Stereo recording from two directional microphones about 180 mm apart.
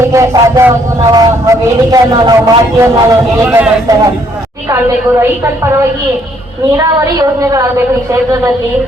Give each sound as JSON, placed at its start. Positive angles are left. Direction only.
{"t": 0.1, "sound": "a man's voice", "side_deg": -15}
{"t": 6.7, "sound": "a woman's voice", "side_deg": -20}